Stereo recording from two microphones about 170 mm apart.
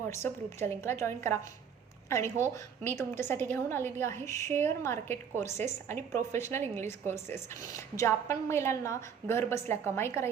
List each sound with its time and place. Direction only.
0.2 s a woman's voice: 10° left (ahead or behind)
5.5 s a woman's voice: 45° right (ahead or behind)
5.9 s a woman's voice: 15° left (ahead or behind)